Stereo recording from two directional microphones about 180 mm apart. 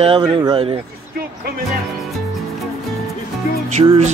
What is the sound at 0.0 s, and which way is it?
Music, 30° right (ahead or behind).